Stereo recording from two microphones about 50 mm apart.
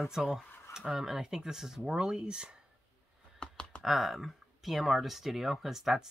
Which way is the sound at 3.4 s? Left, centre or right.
Left.